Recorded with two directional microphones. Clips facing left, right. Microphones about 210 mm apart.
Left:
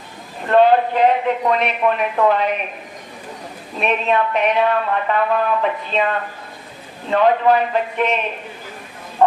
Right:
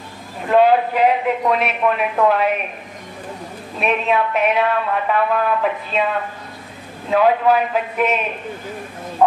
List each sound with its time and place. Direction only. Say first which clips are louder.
0.5 s speech: left 1 dB; 5° right (ahead or behind)
3.8 s speech: even; 5° right (ahead or behind)
7.1 s speech: even; 5° right (ahead or behind)